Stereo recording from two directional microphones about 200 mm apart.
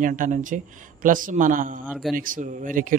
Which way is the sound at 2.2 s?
40° right (ahead or behind).